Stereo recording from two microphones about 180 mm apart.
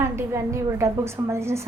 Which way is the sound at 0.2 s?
15° right (ahead or behind).